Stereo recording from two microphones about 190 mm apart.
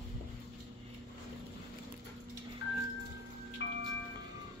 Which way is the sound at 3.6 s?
80° left.